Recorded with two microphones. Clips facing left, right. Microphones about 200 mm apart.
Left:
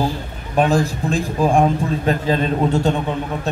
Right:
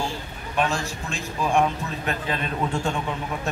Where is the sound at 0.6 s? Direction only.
35° left (ahead or behind).